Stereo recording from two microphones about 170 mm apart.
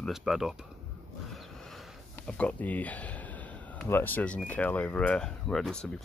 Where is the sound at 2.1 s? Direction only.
10° left (ahead or behind).